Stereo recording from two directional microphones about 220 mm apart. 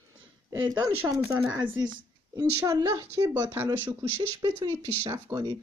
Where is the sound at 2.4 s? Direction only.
15° right (ahead or behind).